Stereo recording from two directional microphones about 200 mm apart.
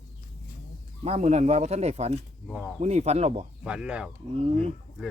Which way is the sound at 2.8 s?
35° right (ahead or behind).